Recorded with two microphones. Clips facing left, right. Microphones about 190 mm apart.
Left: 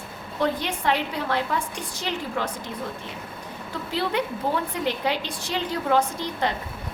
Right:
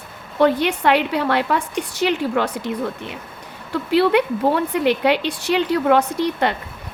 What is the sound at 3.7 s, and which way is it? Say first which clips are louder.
A woman's voice: right 10 dB; 70° right (ahead or behind).